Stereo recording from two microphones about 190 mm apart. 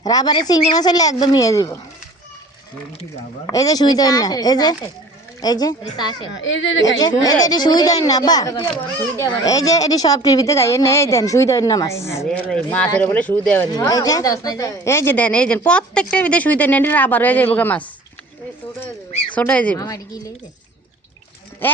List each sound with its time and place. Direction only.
0.0 s speech: 20° left (ahead or behind)
3.5 s speech: 20° left (ahead or behind)
6.3 s a woman's voice: 75° left (ahead or behind)
7.4 s speech: 20° left (ahead or behind)
13.7 s speech: 20° left (ahead or behind)
19.4 s speech: 5° left (ahead or behind)
19.8 s speech: 20° left (ahead or behind)